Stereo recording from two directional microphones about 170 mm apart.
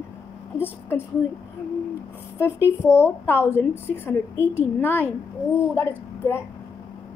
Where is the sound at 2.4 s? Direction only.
15° left (ahead or behind).